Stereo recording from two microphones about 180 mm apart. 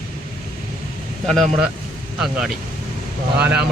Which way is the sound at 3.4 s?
10° right (ahead or behind).